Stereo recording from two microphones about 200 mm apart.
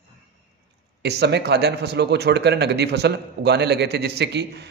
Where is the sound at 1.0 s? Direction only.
55° right (ahead or behind).